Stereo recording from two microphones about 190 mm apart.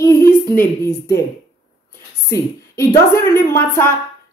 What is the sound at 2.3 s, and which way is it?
Speech, 15° left (ahead or behind).